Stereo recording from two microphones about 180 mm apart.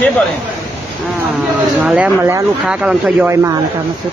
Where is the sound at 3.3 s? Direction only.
15° right (ahead or behind).